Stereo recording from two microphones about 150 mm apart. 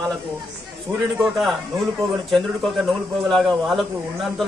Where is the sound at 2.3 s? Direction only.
Centre (ahead or behind).